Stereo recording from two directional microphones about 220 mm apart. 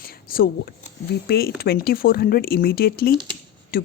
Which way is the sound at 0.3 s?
40° left (ahead or behind).